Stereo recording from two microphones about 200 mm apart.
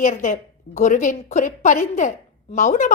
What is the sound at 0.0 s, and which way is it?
A woman's voice, 40° left (ahead or behind).